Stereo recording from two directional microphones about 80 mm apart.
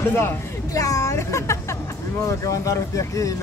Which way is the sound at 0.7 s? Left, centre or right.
Left.